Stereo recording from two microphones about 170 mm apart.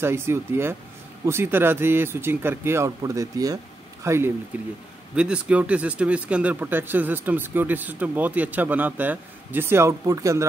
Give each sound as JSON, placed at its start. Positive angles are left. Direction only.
{"t": 0.0, "sound": "speech", "side_deg": -15}